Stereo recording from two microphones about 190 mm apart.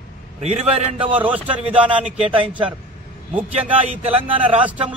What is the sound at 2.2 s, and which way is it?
Speech, 30° right (ahead or behind).